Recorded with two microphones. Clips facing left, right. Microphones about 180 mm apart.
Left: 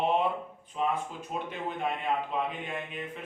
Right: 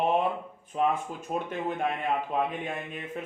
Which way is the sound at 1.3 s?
50° right (ahead or behind).